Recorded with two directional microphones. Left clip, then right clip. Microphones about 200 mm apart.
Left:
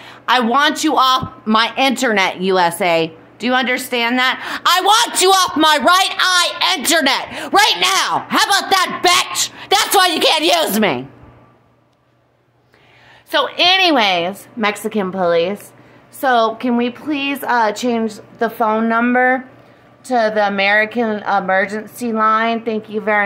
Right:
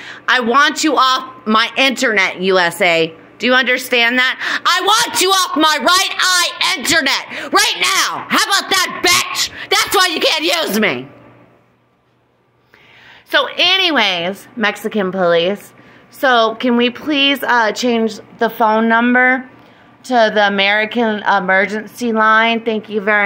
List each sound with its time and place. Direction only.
0.0 s a man's voice: 5° left (ahead or behind)
2.5 s a woman's voice: 5° left (ahead or behind)
7.2 s a woman's voice: 20° left (ahead or behind)
7.5 s a woman's voice: centre (ahead or behind)
13.3 s a woman's voice: centre (ahead or behind)